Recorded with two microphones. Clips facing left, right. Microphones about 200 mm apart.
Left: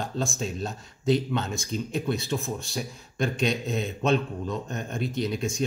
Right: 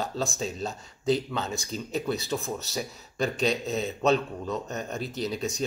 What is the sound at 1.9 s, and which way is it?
Speech, 35° right (ahead or behind).